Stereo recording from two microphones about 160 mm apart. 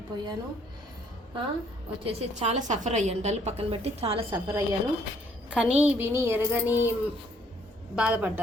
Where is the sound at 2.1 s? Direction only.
45° right (ahead or behind).